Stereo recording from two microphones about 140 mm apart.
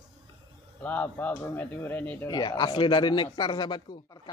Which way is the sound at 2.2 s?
25° left (ahead or behind).